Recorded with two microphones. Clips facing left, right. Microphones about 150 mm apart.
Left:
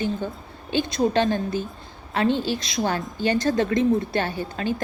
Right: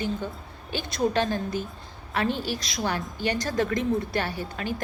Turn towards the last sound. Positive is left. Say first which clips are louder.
# left 4 dB
turn(degrees=25)  # may be behind; listen again after turning